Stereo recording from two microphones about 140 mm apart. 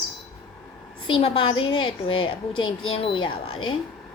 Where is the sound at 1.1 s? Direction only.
35° left (ahead or behind).